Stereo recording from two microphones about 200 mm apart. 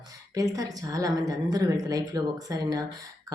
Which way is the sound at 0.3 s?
15° right (ahead or behind).